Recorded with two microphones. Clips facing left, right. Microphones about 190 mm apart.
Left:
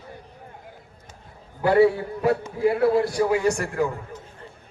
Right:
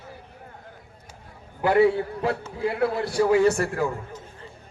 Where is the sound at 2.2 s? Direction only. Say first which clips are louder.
Left 8 dB; 25° left (ahead or behind).